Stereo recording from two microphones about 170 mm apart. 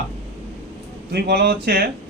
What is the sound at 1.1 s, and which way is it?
Speech, 75° right (ahead or behind).